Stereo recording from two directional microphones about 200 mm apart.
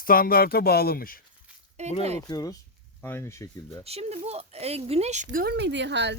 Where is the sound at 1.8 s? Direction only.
35° right (ahead or behind).